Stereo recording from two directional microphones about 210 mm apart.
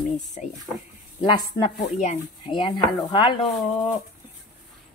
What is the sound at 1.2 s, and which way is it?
Speech, 20° left (ahead or behind).